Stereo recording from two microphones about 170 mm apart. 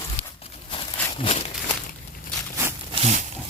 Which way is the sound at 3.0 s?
45° right (ahead or behind).